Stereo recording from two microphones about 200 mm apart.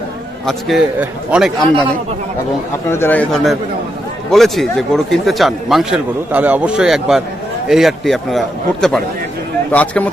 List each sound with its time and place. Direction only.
0.5 s speech: centre (ahead or behind)
2.9 s a man's voice: 10° left (ahead or behind)